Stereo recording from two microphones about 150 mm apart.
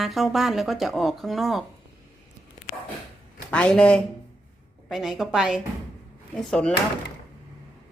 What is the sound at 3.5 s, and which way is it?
Speech, 5° left (ahead or behind).